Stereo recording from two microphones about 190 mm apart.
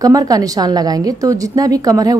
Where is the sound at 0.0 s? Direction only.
20° right (ahead or behind).